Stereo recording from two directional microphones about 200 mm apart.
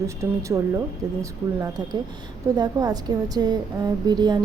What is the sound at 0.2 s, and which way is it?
A woman's voice, 15° right (ahead or behind).